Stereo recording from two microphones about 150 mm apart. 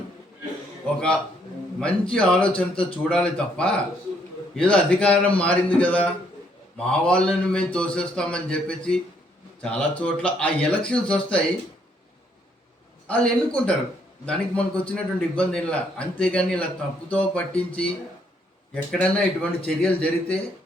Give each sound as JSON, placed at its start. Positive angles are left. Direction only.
{"t": 0.9, "sound": "a man's voice", "side_deg": 5}
{"t": 13.1, "sound": "a man's voice", "side_deg": 5}
{"t": 18.7, "sound": "a man's voice", "side_deg": 10}